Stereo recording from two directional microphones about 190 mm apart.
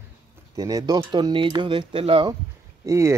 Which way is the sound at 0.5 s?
20° right (ahead or behind).